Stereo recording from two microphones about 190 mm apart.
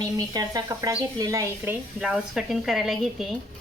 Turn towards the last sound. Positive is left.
turn(degrees=0)  # may be behind; listen again after turning